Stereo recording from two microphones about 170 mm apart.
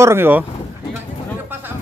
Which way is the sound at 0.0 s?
15° right (ahead or behind).